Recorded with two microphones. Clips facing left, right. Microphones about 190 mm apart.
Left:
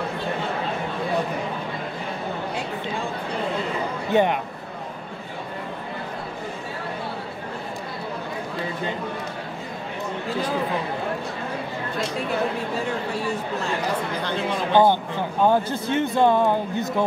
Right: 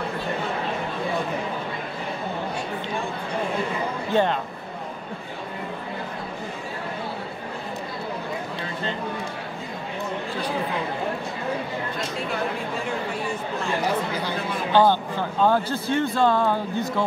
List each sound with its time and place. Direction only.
4.1 s speech: 15° left (ahead or behind)
14.7 s speech: 15° left (ahead or behind)